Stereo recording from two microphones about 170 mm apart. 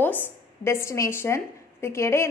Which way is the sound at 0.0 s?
10° left (ahead or behind).